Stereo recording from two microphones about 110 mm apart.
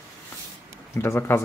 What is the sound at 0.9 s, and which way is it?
Speech, 25° left (ahead or behind).